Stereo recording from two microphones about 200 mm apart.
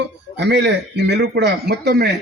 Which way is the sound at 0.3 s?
60° right (ahead or behind).